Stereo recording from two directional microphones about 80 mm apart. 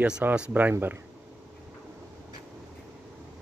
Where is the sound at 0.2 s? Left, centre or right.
Centre.